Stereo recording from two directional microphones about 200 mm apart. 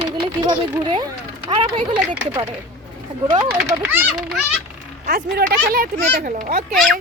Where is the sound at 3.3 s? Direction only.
25° right (ahead or behind).